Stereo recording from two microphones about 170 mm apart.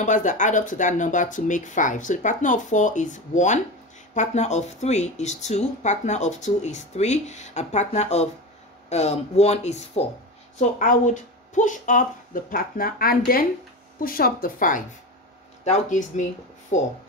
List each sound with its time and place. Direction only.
0.0 s speech: 50° left (ahead or behind)
10.6 s speech: 50° left (ahead or behind)
15.6 s speech: 45° left (ahead or behind)